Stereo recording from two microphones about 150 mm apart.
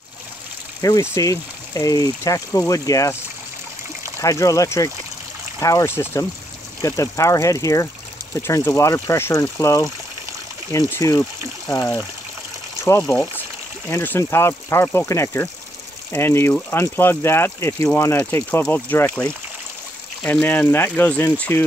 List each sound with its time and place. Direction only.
0.7 s speech: 25° left (ahead or behind)
4.2 s speech: 20° left (ahead or behind)